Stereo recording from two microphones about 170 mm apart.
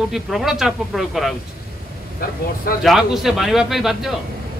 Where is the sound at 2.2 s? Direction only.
60° left (ahead or behind).